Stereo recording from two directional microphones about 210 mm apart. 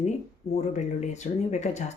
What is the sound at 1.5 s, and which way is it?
Speech, 35° left (ahead or behind).